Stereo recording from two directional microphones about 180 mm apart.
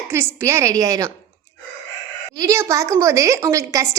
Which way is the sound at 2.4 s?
15° right (ahead or behind).